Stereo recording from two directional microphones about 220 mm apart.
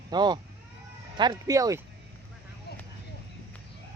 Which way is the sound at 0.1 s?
20° right (ahead or behind).